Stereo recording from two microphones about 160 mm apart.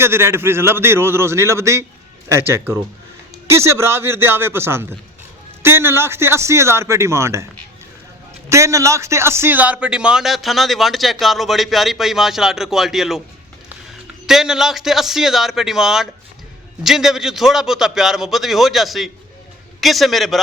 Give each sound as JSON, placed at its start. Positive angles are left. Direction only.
{"t": 0.0, "sound": "a man's voice", "side_deg": -15}
{"t": 8.4, "sound": "a man's voice", "side_deg": -20}
{"t": 14.3, "sound": "a man's voice", "side_deg": -5}